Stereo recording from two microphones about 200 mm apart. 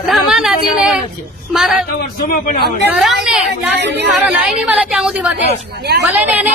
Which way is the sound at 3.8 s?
60° right (ahead or behind).